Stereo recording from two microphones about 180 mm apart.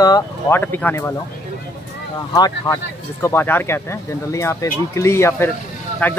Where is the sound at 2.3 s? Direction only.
20° left (ahead or behind).